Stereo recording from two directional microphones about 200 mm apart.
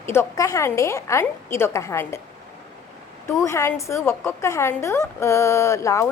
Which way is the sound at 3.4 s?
15° left (ahead or behind).